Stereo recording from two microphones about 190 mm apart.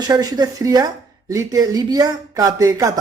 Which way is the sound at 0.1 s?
20° right (ahead or behind).